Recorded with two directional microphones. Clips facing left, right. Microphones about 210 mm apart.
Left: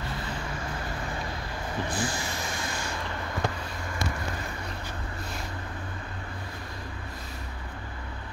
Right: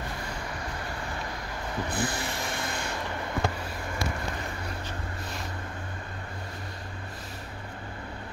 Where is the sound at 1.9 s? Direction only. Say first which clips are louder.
Right 2 dB; 60° right (ahead or behind).